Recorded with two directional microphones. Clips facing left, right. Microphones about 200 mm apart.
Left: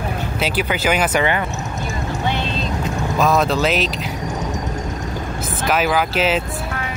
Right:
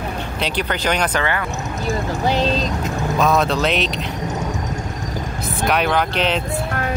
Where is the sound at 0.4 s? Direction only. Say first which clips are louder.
Left 2 dB; 5° left (ahead or behind).